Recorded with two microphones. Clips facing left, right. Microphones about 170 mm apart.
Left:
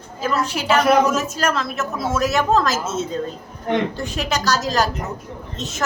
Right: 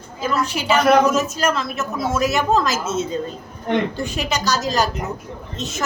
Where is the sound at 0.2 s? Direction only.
Centre (ahead or behind).